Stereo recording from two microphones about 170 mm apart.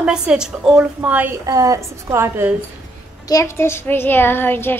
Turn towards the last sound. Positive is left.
turn(degrees=10)  # may be behind; listen again after turning